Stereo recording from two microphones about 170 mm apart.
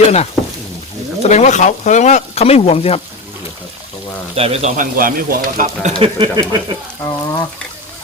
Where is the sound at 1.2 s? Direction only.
40° left (ahead or behind).